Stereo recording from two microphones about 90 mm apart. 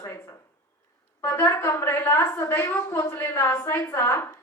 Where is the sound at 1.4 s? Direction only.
30° left (ahead or behind).